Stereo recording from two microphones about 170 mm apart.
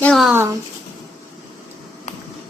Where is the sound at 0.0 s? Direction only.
Centre (ahead or behind).